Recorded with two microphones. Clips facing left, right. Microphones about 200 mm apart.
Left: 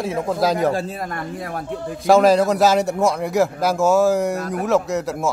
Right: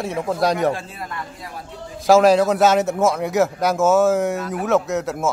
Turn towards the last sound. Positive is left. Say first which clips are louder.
# even
turn(degrees=0)  # may be behind; listen again after turning